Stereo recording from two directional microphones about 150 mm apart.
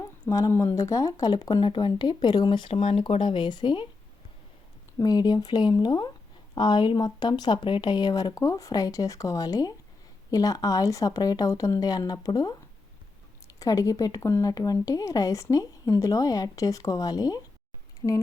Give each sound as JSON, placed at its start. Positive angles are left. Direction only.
{"t": 0.0, "sound": "speech", "side_deg": 20}
{"t": 4.9, "sound": "speech", "side_deg": 25}
{"t": 13.6, "sound": "speech", "side_deg": 20}
{"t": 18.0, "sound": "a sound", "side_deg": 15}